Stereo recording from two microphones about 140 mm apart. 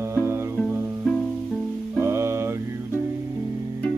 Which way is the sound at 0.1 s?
20° right (ahead or behind).